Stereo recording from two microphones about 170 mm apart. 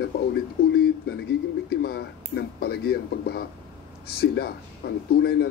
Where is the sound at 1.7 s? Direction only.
70° left (ahead or behind).